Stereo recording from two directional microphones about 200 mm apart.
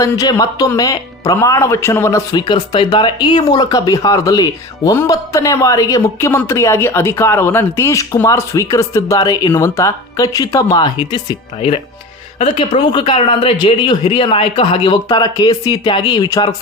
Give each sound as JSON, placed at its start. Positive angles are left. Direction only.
{"t": 0.0, "sound": "speech", "side_deg": 15}